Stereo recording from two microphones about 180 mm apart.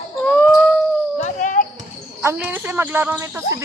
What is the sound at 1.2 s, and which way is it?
Basketball bounce, 45° left (ahead or behind).